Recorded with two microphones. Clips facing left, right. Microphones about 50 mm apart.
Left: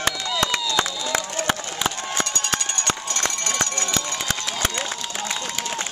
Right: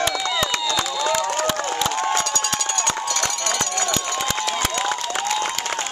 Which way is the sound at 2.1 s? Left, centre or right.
Left.